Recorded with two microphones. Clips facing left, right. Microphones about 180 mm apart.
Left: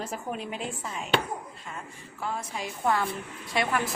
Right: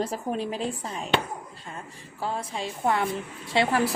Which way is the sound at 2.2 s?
30° right (ahead or behind).